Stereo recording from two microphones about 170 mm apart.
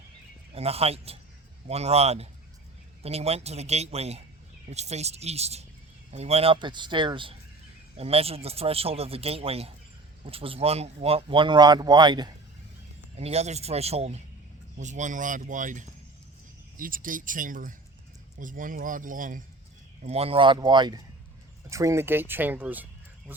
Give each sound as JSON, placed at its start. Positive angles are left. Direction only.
{"t": 0.5, "sound": "speech", "side_deg": -35}
{"t": 13.1, "sound": "speech", "side_deg": -40}
{"t": 20.0, "sound": "speech", "side_deg": -40}